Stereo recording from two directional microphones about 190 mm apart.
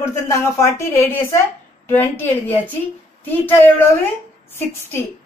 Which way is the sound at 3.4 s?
10° left (ahead or behind).